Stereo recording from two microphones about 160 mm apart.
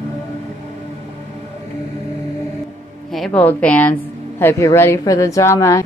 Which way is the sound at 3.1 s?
5° left (ahead or behind).